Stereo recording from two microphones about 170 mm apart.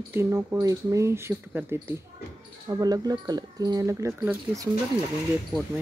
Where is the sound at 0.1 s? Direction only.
15° right (ahead or behind).